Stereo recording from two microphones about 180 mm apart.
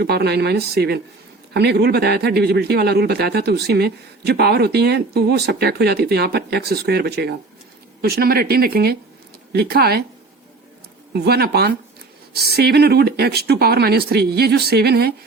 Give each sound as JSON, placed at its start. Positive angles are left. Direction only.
{"t": 0.0, "sound": "speech", "side_deg": -65}
{"t": 11.1, "sound": "speech", "side_deg": -65}